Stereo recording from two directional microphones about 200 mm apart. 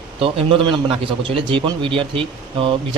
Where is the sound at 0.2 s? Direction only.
25° right (ahead or behind).